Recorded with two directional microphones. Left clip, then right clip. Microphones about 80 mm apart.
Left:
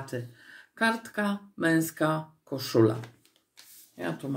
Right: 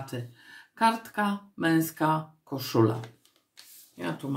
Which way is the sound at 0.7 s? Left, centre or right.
Right.